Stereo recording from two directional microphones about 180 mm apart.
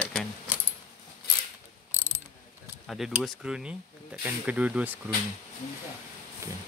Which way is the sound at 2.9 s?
Centre (ahead or behind).